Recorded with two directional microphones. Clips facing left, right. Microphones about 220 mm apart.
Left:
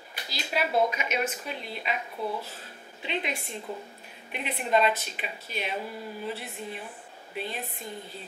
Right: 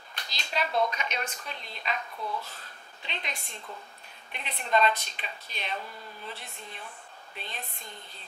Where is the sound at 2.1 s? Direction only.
30° left (ahead or behind).